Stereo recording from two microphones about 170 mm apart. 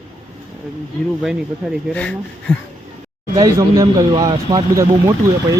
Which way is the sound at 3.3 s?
25° right (ahead or behind).